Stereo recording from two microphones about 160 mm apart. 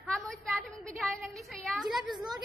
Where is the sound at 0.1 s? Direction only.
Centre (ahead or behind).